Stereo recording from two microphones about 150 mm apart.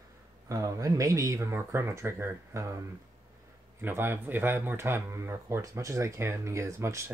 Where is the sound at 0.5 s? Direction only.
20° right (ahead or behind).